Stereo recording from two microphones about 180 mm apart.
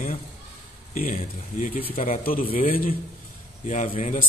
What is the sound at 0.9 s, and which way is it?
A man's voice, 50° left (ahead or behind).